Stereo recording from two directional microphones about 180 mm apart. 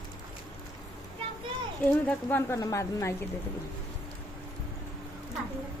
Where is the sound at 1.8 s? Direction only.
10° left (ahead or behind).